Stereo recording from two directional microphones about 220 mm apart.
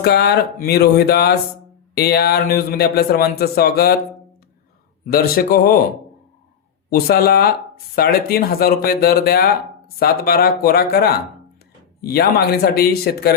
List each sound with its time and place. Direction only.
0.0 s a man's voice: 45° left (ahead or behind)
5.0 s a man's voice: 45° left (ahead or behind)
6.9 s a man's voice: 45° left (ahead or behind)